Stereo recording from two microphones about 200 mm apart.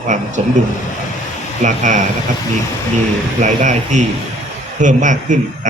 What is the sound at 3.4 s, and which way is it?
Speech, 35° right (ahead or behind).